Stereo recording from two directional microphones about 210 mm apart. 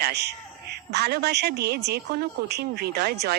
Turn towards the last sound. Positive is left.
turn(degrees=-50)  # may be behind; listen again after turning